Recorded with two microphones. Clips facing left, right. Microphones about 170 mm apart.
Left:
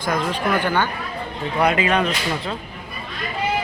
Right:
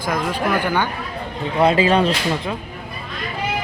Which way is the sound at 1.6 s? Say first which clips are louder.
Right 4 dB; 30° right (ahead or behind).